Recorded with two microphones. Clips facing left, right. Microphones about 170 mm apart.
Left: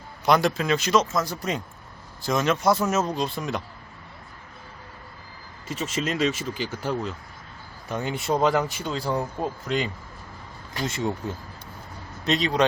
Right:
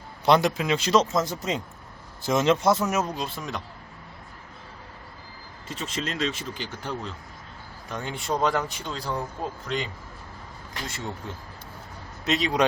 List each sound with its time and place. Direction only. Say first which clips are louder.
0.3 s speech: even; 25° right (ahead or behind)
0.8 s speech: right 3 dB; 30° right (ahead or behind); by 3.1 s 15° right (ahead or behind)
3.2 s speech: left 5 dB; centre (ahead or behind)
5.6 s speech: left 4 dB; 5° left (ahead or behind)
10.8 s speech: left 9 dB; 20° left (ahead or behind)
12.2 s a man's voice: left 1 dB; 5° right (ahead or behind)